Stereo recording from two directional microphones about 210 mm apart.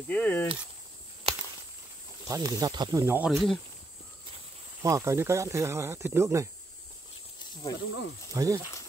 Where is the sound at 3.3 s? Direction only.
Centre (ahead or behind).